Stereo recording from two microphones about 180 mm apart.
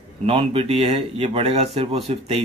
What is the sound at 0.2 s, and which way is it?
Speech, 30° right (ahead or behind).